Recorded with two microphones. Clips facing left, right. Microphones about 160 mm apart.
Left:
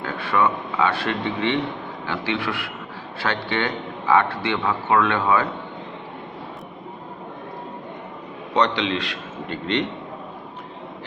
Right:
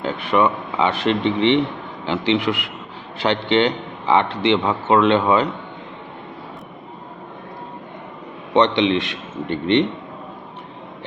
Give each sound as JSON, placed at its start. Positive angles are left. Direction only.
{"t": 0.0, "sound": "a man's voice", "side_deg": -20}
{"t": 8.5, "sound": "a man's voice", "side_deg": -20}